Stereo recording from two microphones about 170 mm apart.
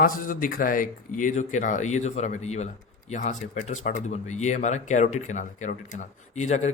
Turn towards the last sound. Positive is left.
turn(degrees=45)  # may be behind; listen again after turning